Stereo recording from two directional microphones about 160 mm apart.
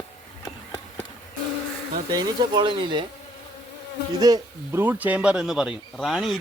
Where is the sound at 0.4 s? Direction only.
20° left (ahead or behind).